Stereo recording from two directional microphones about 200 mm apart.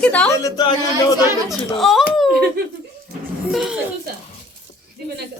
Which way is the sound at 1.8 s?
Centre (ahead or behind).